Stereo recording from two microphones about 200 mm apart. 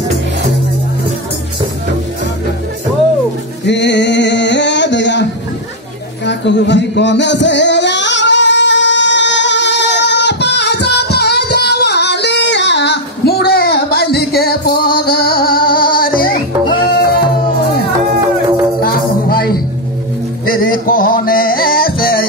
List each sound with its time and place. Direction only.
3.6 s male singing: 60° left (ahead or behind)
6.2 s singing: 60° left (ahead or behind)
15.0 s music: 50° left (ahead or behind)
18.8 s music: 50° left (ahead or behind)